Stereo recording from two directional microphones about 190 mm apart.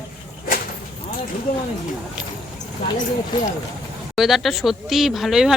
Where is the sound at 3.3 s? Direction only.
25° left (ahead or behind).